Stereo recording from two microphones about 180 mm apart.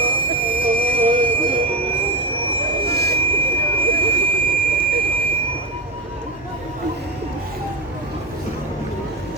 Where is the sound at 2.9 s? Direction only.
65° right (ahead or behind).